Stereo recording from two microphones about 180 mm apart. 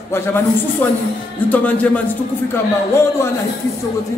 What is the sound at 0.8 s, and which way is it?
A man's voice, 10° left (ahead or behind).